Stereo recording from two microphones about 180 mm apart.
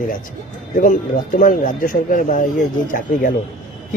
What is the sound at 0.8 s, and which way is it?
Speech, 45° left (ahead or behind).